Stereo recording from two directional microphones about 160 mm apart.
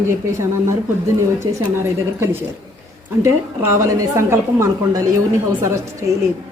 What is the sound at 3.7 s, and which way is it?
A woman's voice, 15° right (ahead or behind).